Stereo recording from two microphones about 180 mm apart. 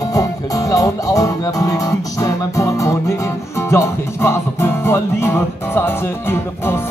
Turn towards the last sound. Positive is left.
turn(degrees=15)  # may be behind; listen again after turning